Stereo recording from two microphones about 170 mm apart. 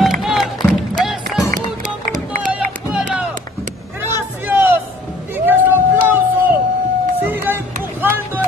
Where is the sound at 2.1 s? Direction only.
50° right (ahead or behind).